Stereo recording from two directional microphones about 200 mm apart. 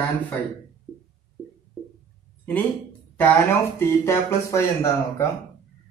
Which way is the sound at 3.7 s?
15° left (ahead or behind).